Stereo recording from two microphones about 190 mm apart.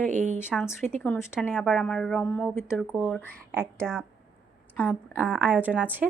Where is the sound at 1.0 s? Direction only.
10° left (ahead or behind).